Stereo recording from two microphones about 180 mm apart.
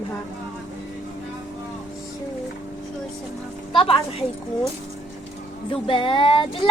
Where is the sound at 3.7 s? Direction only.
30° left (ahead or behind).